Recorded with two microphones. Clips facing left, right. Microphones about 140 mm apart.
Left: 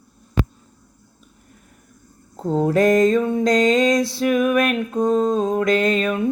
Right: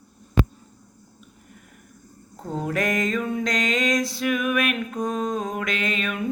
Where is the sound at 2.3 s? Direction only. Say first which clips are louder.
Left 9 dB; 30° left (ahead or behind).